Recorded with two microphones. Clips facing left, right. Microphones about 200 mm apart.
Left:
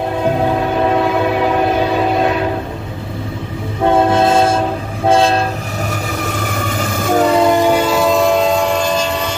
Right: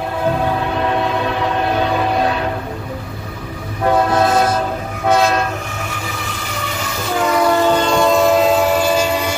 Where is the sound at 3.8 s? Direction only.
25° left (ahead or behind).